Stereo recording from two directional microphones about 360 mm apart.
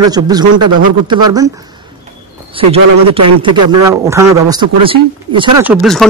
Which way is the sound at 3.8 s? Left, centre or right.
Centre.